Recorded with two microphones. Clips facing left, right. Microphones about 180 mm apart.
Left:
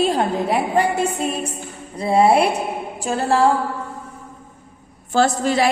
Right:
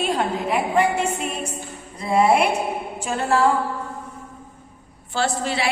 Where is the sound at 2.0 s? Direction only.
30° left (ahead or behind).